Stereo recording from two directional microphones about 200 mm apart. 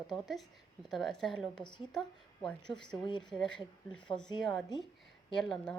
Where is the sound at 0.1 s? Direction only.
Centre (ahead or behind).